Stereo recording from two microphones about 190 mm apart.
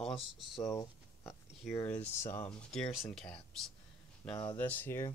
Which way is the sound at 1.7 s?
10° left (ahead or behind).